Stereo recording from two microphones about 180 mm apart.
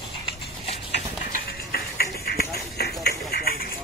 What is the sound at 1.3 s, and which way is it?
Music, 60° left (ahead or behind).